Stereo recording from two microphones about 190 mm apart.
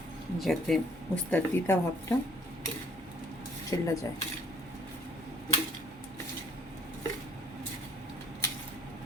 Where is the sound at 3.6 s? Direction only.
15° left (ahead or behind).